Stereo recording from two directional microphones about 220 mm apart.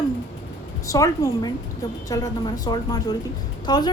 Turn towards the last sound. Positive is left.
turn(degrees=20)  # may be behind; listen again after turning